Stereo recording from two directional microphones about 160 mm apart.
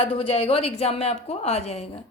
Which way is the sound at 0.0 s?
35° left (ahead or behind).